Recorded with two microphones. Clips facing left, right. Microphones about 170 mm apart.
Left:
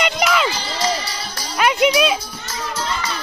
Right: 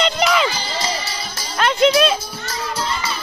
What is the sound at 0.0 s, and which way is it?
Music, centre (ahead or behind).